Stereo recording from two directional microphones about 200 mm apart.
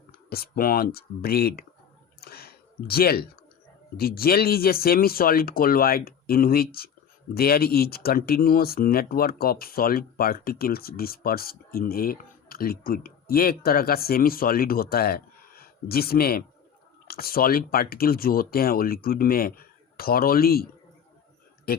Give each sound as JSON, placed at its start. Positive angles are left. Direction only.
{"t": 0.3, "sound": "speech", "side_deg": 50}
{"t": 2.2, "sound": "a sound", "side_deg": 50}
{"t": 3.9, "sound": "speech", "side_deg": 50}